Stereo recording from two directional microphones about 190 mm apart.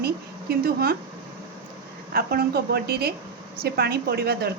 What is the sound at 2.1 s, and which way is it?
A woman's voice, 55° right (ahead or behind).